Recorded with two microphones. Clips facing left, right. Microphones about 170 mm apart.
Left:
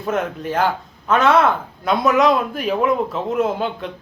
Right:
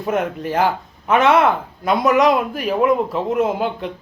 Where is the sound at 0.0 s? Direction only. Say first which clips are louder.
Right 1 dB; 5° right (ahead or behind).